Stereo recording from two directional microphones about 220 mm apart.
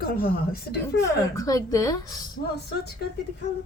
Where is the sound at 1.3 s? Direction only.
15° left (ahead or behind).